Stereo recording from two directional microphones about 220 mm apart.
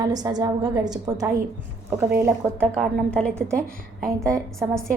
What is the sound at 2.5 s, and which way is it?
Speech, 5° left (ahead or behind).